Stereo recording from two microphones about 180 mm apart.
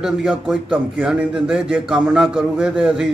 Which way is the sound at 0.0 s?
5° right (ahead or behind).